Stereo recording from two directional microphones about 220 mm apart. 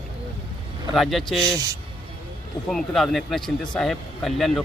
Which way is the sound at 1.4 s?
15° right (ahead or behind).